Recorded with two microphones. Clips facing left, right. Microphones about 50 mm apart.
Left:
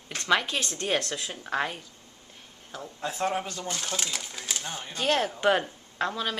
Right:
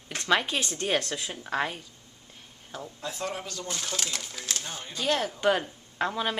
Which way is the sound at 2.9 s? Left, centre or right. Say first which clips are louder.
Left 6 dB; left.